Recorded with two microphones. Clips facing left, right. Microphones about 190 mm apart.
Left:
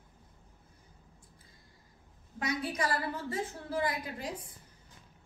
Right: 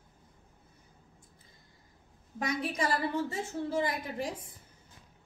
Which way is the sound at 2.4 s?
25° right (ahead or behind).